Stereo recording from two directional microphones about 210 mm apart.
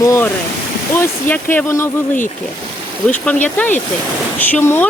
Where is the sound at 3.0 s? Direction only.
5° left (ahead or behind).